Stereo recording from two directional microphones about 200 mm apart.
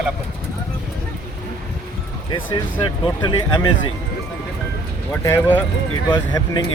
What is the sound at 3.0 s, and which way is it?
Speech, 20° left (ahead or behind).